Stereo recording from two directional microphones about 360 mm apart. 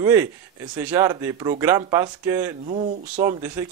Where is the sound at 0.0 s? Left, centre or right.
Centre.